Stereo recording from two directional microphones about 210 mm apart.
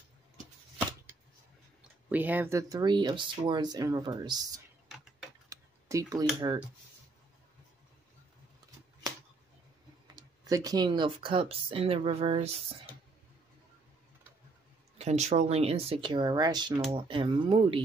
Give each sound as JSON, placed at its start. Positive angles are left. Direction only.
{"t": 2.0, "sound": "speech", "side_deg": -10}
{"t": 4.8, "sound": "a sound", "side_deg": 0}
{"t": 5.5, "sound": "tick-tock", "side_deg": -15}
{"t": 6.4, "sound": "speech", "side_deg": -20}
{"t": 10.1, "sound": "speech", "side_deg": -15}
{"t": 15.0, "sound": "speech", "side_deg": -30}